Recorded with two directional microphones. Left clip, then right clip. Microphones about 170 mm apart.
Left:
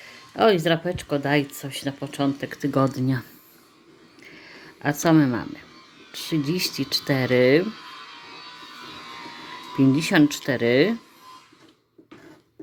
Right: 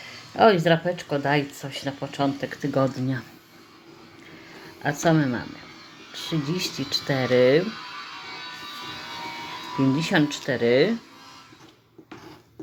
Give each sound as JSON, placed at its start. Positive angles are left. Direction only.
{"t": 0.0, "sound": "speech", "side_deg": 35}
{"t": 4.8, "sound": "speech", "side_deg": 45}
{"t": 9.9, "sound": "speech", "side_deg": 45}